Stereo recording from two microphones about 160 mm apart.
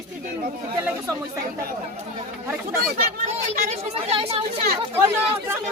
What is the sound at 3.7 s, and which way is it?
Speech, 40° right (ahead or behind).